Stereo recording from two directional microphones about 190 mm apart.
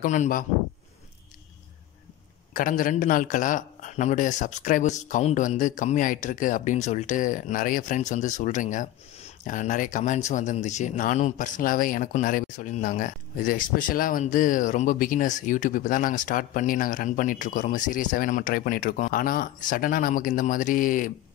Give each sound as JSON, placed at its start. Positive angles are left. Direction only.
{"t": 0.0, "sound": "speech", "side_deg": 40}
{"t": 2.5, "sound": "speech", "side_deg": 45}